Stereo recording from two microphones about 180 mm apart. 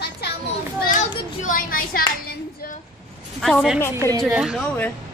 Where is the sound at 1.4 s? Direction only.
50° left (ahead or behind).